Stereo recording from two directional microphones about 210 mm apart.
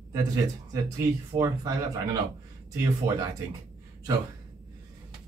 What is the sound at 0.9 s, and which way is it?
Speech, 15° right (ahead or behind).